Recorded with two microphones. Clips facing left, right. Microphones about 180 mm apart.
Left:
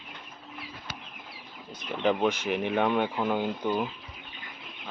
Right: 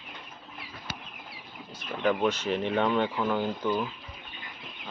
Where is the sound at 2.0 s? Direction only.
15° left (ahead or behind).